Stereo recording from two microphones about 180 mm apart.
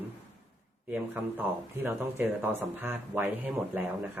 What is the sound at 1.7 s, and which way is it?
Speech, 10° right (ahead or behind).